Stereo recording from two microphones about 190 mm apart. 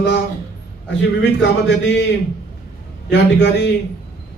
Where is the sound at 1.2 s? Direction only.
65° left (ahead or behind).